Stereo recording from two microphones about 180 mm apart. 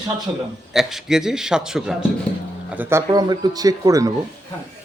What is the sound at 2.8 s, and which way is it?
A man's voice, 15° right (ahead or behind).